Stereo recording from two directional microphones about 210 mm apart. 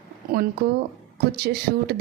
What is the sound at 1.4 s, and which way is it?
Speech, 50° right (ahead or behind).